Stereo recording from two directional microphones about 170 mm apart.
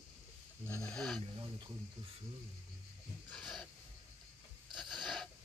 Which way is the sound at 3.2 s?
5° left (ahead or behind).